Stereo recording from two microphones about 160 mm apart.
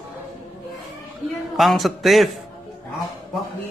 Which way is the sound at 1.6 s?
Centre (ahead or behind).